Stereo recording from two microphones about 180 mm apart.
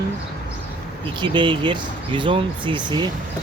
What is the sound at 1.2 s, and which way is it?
Speech, 25° right (ahead or behind).